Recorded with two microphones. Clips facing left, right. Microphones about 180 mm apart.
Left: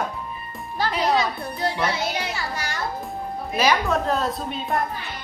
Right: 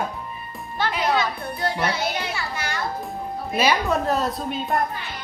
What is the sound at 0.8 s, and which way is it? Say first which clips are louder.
Speech: left 1 dB; 35° left (ahead or behind).